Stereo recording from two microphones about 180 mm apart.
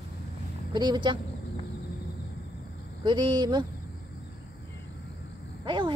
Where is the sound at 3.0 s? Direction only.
25° right (ahead or behind).